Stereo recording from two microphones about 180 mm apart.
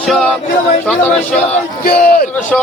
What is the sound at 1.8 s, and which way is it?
Speech, 55° left (ahead or behind).